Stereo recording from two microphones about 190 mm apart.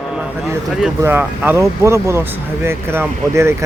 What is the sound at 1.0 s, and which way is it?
Speech, 10° right (ahead or behind).